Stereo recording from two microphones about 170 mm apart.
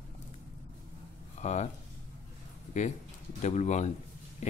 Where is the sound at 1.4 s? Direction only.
40° left (ahead or behind).